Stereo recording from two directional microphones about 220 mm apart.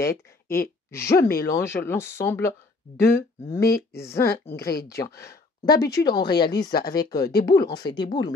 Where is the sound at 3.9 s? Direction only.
15° left (ahead or behind).